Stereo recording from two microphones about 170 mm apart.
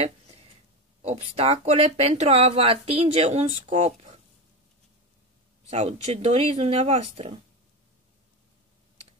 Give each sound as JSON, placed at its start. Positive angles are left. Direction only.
{"t": 1.0, "sound": "speech", "side_deg": -35}
{"t": 5.7, "sound": "speech", "side_deg": -40}